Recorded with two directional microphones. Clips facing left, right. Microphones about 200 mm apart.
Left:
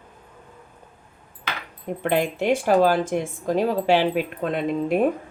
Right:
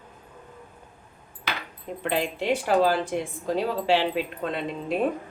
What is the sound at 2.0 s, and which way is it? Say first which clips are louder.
Speech: left 4 dB; 50° left (ahead or behind).